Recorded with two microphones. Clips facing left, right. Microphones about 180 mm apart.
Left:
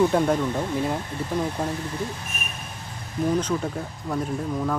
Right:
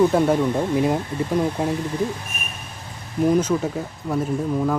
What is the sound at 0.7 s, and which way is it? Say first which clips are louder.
Speech: right 7 dB; 15° right (ahead or behind).